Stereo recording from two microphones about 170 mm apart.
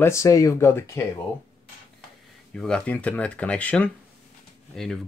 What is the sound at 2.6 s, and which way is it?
Speech, 5° left (ahead or behind).